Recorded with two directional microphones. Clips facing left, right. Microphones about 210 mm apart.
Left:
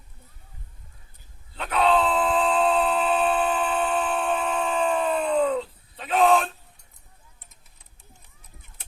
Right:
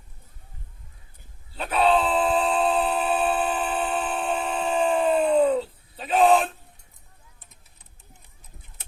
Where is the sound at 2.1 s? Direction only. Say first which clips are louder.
Even; 30° right (ahead or behind).